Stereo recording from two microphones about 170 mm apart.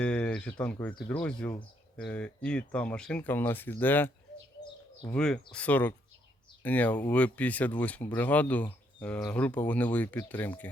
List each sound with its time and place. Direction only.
0.0 s speech: 5° left (ahead or behind)